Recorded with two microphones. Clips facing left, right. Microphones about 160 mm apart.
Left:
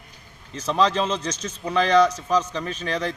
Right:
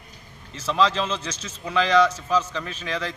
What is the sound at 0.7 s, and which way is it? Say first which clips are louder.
Speech: left 1 dB; 35° left (ahead or behind).